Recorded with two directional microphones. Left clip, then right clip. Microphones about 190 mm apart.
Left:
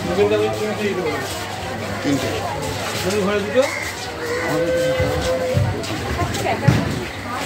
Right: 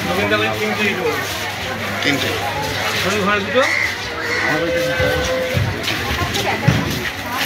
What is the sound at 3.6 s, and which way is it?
Speech, 25° right (ahead or behind).